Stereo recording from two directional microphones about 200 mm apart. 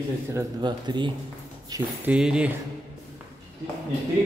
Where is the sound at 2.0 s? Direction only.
5° right (ahead or behind).